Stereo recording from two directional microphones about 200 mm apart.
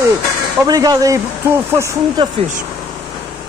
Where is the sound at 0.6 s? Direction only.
20° right (ahead or behind).